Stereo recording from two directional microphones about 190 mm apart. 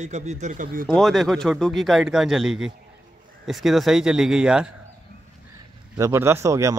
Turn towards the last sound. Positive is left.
turn(degrees=-15)  # may be behind; listen again after turning